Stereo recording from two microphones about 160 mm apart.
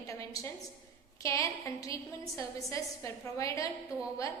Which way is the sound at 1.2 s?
20° left (ahead or behind).